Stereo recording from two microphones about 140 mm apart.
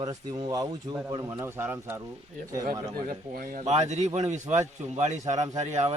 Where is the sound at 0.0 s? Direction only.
30° right (ahead or behind).